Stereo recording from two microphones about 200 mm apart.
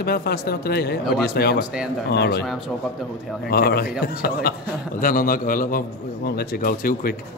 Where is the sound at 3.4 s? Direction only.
50° left (ahead or behind).